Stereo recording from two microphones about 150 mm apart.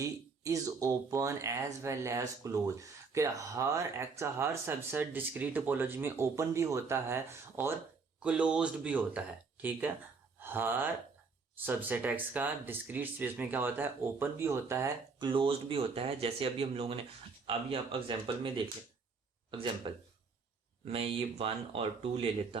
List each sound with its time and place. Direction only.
0.0 s speech: 20° right (ahead or behind)
15.3 s speech: 35° right (ahead or behind)
19.5 s speech: 35° right (ahead or behind)